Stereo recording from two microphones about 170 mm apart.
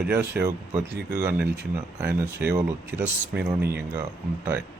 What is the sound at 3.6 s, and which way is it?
Speech, 70° right (ahead or behind).